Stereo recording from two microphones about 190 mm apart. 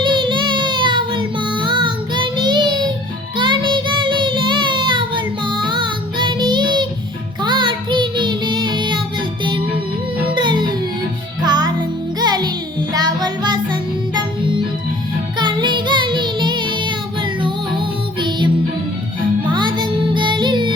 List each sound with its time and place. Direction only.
0.0 s child singing: 25° right (ahead or behind)
10.2 s music: 25° right (ahead or behind)
15.4 s music: 25° right (ahead or behind)